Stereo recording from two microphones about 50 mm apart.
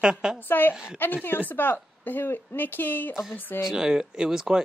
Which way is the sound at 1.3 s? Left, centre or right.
Left.